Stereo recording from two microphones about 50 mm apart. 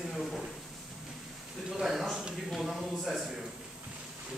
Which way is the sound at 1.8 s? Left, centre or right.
Centre.